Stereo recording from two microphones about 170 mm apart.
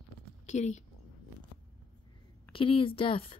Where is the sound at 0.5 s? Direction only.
45° left (ahead or behind).